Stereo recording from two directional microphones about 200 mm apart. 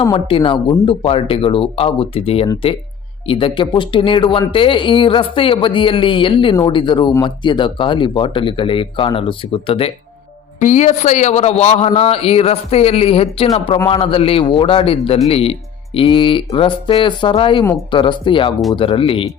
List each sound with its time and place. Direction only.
0.0 s a man's voice: 25° left (ahead or behind)